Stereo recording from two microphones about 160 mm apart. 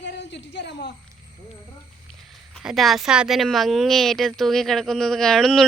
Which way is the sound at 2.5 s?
Centre (ahead or behind).